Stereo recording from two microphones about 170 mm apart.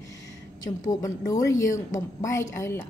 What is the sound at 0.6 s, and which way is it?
A woman's voice, 20° left (ahead or behind).